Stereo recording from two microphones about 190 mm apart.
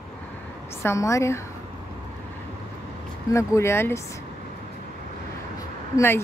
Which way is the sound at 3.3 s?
15° left (ahead or behind).